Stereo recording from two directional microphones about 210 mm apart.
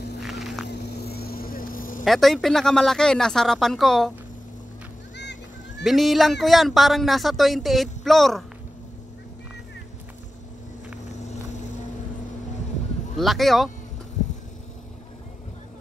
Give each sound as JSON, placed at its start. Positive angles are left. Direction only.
{"t": 0.2, "sound": "a sound", "side_deg": 0}
{"t": 0.7, "sound": "vehicle", "side_deg": 50}
{"t": 2.0, "sound": "speech", "side_deg": 0}
{"t": 5.1, "sound": "music", "side_deg": 55}
{"t": 5.9, "sound": "speech", "side_deg": 0}
{"t": 13.2, "sound": "speech", "side_deg": 0}